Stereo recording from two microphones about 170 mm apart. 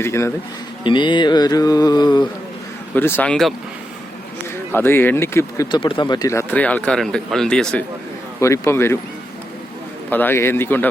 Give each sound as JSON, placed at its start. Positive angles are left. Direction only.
{"t": 0.0, "sound": "speech", "side_deg": 15}
{"t": 0.9, "sound": "mantra", "side_deg": 30}
{"t": 2.9, "sound": "speech", "side_deg": 10}
{"t": 4.7, "sound": "speech", "side_deg": 15}
{"t": 6.5, "sound": "speech", "side_deg": 10}
{"t": 8.4, "sound": "speech", "side_deg": 15}
{"t": 10.1, "sound": "speech", "side_deg": 10}